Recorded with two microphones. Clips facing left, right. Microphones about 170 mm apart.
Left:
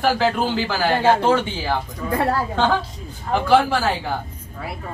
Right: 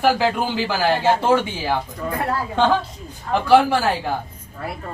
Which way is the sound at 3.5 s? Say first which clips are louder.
Right 2 dB; 10° right (ahead or behind).